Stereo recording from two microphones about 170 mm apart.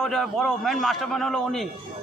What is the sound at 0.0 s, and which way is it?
A man's voice, centre (ahead or behind).